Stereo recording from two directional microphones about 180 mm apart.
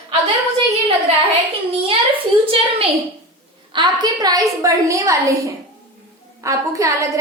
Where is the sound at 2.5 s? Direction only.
30° right (ahead or behind).